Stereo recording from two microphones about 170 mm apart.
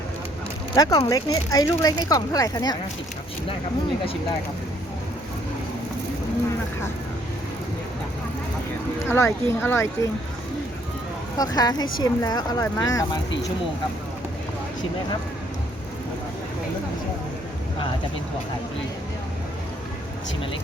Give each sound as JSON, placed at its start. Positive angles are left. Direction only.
{"t": 0.8, "sound": "speech", "side_deg": 20}
{"t": 9.0, "sound": "speech", "side_deg": 15}
{"t": 11.3, "sound": "speech", "side_deg": 20}